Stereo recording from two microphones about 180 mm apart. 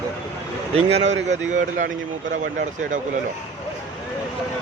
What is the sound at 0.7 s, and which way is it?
Speech, 35° right (ahead or behind).